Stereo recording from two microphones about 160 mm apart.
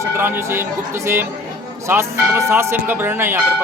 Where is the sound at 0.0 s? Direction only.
15° right (ahead or behind).